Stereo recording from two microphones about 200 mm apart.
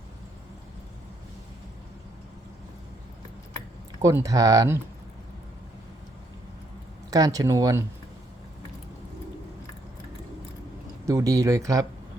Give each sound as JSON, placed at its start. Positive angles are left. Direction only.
{"t": 4.0, "sound": "speech", "side_deg": -15}
{"t": 7.1, "sound": "speech", "side_deg": -15}
{"t": 11.0, "sound": "speech", "side_deg": -15}